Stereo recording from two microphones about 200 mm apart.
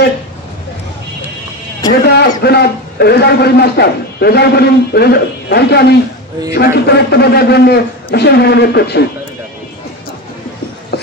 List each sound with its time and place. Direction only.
1.9 s a man's voice: 55° left (ahead or behind)